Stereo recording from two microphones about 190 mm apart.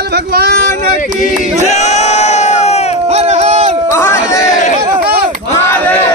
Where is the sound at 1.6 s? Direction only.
35° left (ahead or behind).